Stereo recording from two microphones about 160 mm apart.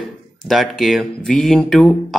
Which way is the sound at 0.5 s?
Centre (ahead or behind).